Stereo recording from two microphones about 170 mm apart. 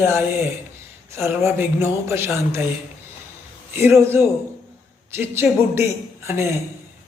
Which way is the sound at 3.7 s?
15° right (ahead or behind).